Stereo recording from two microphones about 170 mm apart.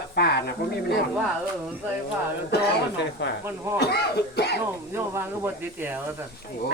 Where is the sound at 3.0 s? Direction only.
90° left.